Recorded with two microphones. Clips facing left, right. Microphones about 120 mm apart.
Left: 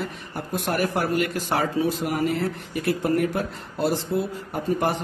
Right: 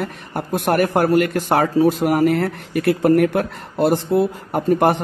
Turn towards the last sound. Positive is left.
turn(degrees=-60)  # may be behind; listen again after turning